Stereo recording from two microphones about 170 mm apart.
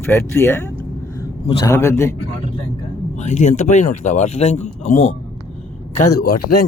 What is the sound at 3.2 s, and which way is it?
Speech, 40° left (ahead or behind).